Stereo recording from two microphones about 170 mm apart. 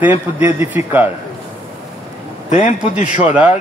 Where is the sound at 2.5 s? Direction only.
45° left (ahead or behind).